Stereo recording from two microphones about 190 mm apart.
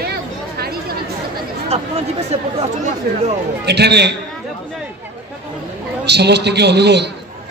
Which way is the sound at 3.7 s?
60° right (ahead or behind).